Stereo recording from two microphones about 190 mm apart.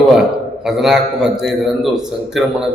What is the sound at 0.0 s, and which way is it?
A man's voice, centre (ahead or behind).